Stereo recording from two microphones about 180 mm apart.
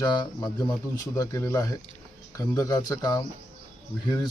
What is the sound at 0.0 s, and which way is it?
Speech, 25° left (ahead or behind).